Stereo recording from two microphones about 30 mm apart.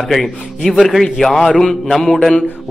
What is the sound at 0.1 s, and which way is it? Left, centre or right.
A man's voice, centre.